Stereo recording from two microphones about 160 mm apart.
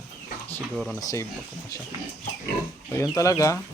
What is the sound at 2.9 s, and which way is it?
Speech, 20° left (ahead or behind).